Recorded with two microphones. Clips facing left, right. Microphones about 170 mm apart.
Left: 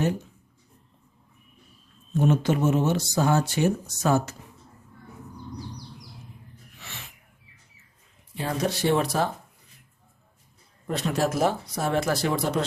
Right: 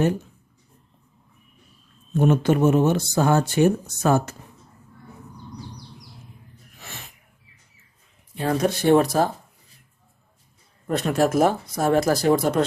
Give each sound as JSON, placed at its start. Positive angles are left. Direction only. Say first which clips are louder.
{"t": 2.1, "sound": "speech", "louder": "right 4 dB", "side_deg": -60}
{"t": 6.7, "sound": "sneeze", "louder": "right 3 dB", "side_deg": -45}
{"t": 8.4, "sound": "speech", "louder": "right 6 dB", "side_deg": -55}
{"t": 10.9, "sound": "speech", "louder": "right 5 dB", "side_deg": -55}